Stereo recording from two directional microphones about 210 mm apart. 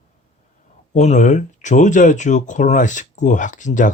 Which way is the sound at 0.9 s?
35° left (ahead or behind).